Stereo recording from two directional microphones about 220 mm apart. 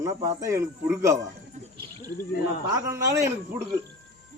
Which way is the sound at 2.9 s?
15° right (ahead or behind).